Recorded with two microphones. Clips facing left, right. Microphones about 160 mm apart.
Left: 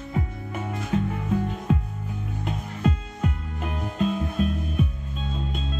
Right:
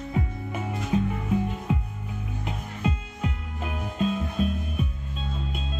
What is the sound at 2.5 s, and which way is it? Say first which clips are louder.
Music: left 4 dB; 10° right (ahead or behind).